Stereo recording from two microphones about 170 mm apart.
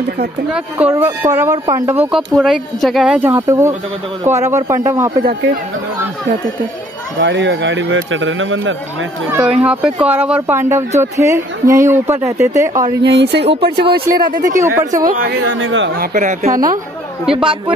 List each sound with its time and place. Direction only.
0.5 s speech: 10° right (ahead or behind)
7.2 s speech: 90° right
9.3 s speech: 5° right (ahead or behind)
13.0 s speech: 80° right
13.9 s speech: 60° right (ahead or behind)
14.4 s speech: 20° right (ahead or behind)
15.0 s speech: 60° right (ahead or behind)
17.4 s speech: 30° right (ahead or behind)